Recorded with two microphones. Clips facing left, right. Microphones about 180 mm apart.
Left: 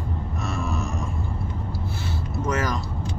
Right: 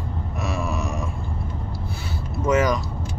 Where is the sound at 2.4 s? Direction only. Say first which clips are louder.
Right 6 dB; 90° right.